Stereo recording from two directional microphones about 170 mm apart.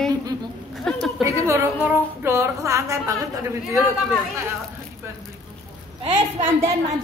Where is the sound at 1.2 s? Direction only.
15° right (ahead or behind).